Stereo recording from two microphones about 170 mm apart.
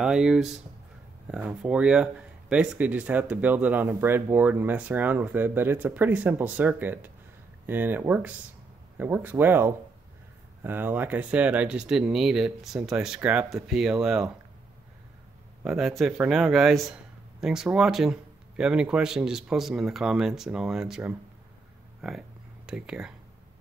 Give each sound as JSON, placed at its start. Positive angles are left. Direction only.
{"t": 0.0, "sound": "a man's voice", "side_deg": -5}
{"t": 15.6, "sound": "a man's voice", "side_deg": 0}